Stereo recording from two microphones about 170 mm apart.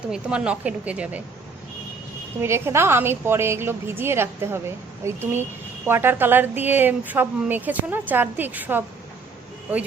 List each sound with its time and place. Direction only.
0.1 s a woman's voice: 5° right (ahead or behind)
2.4 s a woman's voice: 15° right (ahead or behind)